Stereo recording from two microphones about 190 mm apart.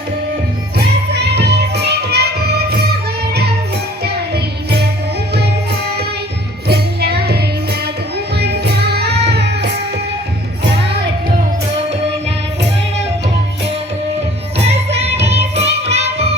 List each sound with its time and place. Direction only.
1.1 s music: 60° right (ahead or behind)
6.7 s music: 55° right (ahead or behind)
8.4 s music: 60° right (ahead or behind)
14.9 s music: 35° right (ahead or behind)